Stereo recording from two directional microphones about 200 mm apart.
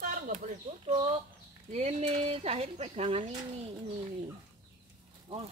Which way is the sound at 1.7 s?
30° right (ahead or behind).